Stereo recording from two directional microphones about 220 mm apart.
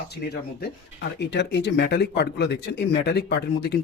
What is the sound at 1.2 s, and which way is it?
Speech, 50° left (ahead or behind).